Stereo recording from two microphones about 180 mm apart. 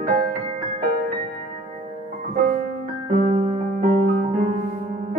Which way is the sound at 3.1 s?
40° right (ahead or behind).